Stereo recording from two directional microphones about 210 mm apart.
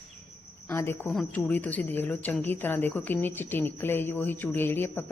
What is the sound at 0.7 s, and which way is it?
A woman's voice, 10° left (ahead or behind).